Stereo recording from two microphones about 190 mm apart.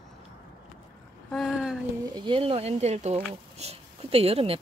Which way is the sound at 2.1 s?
25° right (ahead or behind).